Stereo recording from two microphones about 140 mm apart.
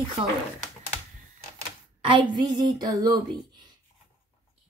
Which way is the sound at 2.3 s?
35° right (ahead or behind).